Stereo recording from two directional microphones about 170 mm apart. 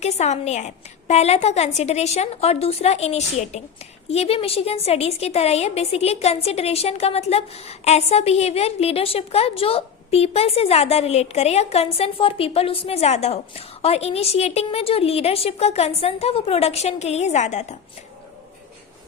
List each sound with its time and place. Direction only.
0.0 s a woman's voice: 40° left (ahead or behind)